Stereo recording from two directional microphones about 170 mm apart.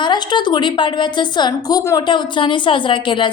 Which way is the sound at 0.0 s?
25° left (ahead or behind).